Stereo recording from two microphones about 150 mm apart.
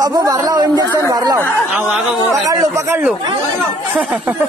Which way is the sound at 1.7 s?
5° right (ahead or behind).